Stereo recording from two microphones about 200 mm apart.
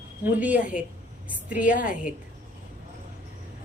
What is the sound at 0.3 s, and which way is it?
A woman's voice, 5° right (ahead or behind).